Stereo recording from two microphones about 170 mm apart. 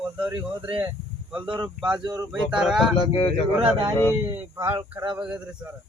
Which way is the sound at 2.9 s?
30° left (ahead or behind).